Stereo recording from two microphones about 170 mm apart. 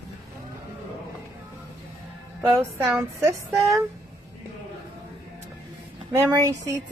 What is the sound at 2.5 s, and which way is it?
Speech, 15° right (ahead or behind).